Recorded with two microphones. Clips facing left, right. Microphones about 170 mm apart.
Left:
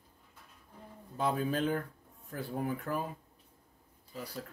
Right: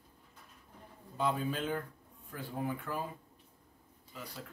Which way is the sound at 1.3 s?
45° left (ahead or behind).